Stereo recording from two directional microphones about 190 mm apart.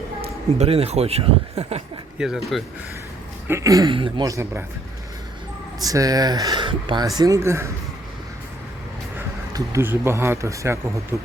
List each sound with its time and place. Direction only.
0.2 s speech: 30° right (ahead or behind)
2.1 s speech: 5° right (ahead or behind)
3.4 s a woman's voice: 15° right (ahead or behind)
5.8 s speech: 20° right (ahead or behind)
9.1 s speech: 15° right (ahead or behind)